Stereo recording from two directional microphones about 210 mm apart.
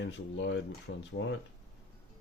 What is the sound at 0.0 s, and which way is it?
Speech, 55° left (ahead or behind).